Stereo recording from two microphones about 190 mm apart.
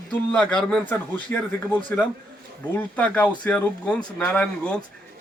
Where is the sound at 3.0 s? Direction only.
5° left (ahead or behind).